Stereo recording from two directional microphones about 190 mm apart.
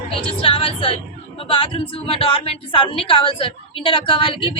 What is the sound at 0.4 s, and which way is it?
Speech, 30° left (ahead or behind).